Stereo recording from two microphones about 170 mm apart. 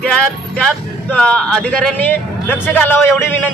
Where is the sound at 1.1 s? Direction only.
5° left (ahead or behind).